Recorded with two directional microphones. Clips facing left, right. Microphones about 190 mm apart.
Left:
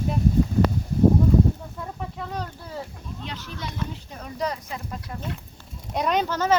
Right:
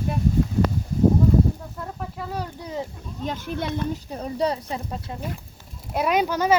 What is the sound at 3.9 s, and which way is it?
Speech, 30° right (ahead or behind).